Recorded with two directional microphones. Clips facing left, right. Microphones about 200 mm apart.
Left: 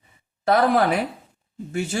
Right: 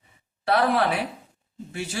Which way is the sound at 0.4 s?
45° left (ahead or behind).